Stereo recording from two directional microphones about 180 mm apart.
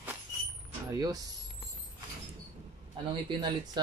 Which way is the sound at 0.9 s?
20° right (ahead or behind).